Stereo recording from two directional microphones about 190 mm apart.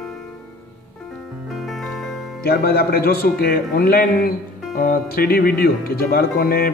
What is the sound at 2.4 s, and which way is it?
Speech, 50° left (ahead or behind).